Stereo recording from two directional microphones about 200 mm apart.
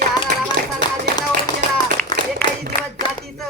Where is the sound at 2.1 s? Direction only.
20° left (ahead or behind).